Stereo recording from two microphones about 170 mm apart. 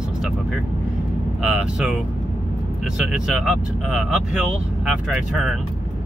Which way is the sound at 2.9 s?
5° right (ahead or behind).